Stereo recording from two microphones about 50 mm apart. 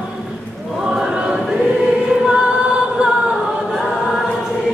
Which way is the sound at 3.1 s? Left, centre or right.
Centre.